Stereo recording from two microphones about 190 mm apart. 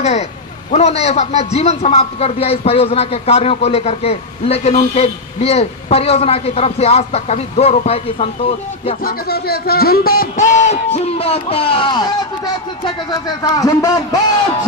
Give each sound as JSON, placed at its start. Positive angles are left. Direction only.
{"t": 0.0, "sound": "a sound", "side_deg": 35}
{"t": 0.7, "sound": "a man's voice", "side_deg": 35}
{"t": 9.0, "sound": "a man's voice", "side_deg": 55}